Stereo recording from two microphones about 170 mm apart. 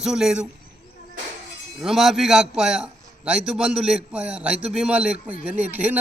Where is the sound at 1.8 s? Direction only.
5° right (ahead or behind).